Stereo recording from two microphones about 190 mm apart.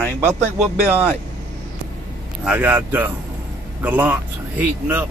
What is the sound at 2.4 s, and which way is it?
Speech, 10° right (ahead or behind).